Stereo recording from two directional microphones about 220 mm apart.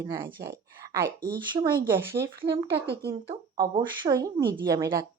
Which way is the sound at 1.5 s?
15° right (ahead or behind).